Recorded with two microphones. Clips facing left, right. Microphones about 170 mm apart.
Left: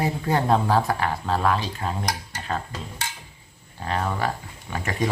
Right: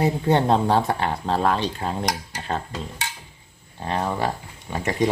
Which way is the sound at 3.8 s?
25° right (ahead or behind).